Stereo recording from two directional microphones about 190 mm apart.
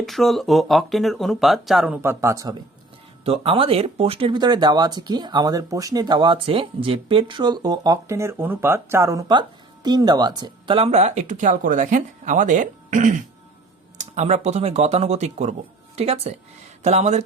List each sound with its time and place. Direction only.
0.0 s speech: centre (ahead or behind)
2.0 s speech: 15° right (ahead or behind)
3.2 s speech: 30° right (ahead or behind)